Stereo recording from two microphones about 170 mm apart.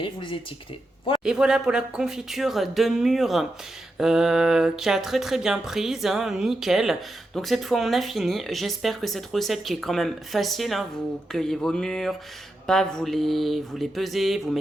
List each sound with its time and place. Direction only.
0.0 s speech: 30° left (ahead or behind)
1.2 s speech: 5° right (ahead or behind)